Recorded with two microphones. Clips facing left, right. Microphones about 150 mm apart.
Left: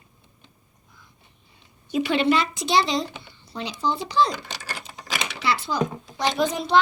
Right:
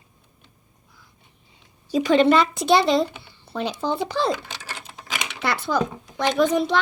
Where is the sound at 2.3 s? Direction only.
55° right (ahead or behind).